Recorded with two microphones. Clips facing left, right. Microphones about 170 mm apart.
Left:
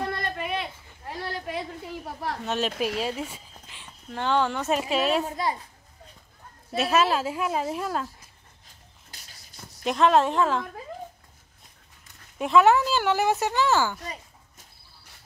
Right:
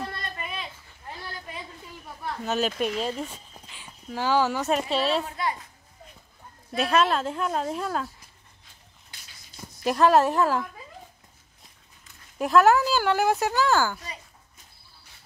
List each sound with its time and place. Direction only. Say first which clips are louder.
0.0 s a sound: left 5 dB; 60° left (ahead or behind)
2.4 s speech: right 2 dB; centre (ahead or behind)
5.2 s a child's voice: left 2 dB; 35° left (ahead or behind)
6.7 s speech: even; 5° left (ahead or behind)
9.1 s a sound: left 2 dB; 40° left (ahead or behind)
9.6 s speech: right 1 dB; 5° right (ahead or behind)
12.4 s speech: even; centre (ahead or behind)